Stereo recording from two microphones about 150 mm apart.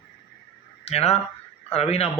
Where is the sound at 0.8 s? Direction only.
45° left (ahead or behind).